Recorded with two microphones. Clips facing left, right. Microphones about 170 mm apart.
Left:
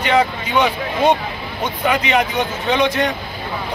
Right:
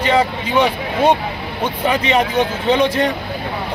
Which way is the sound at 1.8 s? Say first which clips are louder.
Right 1 dB; 30° right (ahead or behind).